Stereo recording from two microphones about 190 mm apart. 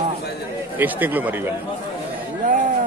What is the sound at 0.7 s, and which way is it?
Speech, 10° right (ahead or behind).